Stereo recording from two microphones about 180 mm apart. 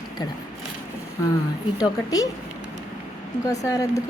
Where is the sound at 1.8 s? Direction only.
20° left (ahead or behind).